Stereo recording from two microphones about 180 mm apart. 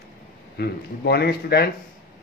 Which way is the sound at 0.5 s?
65° left (ahead or behind).